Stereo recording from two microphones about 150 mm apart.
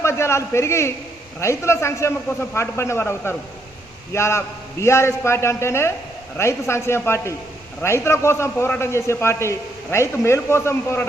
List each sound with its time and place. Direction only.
0.0 s a man's voice: 20° left (ahead or behind)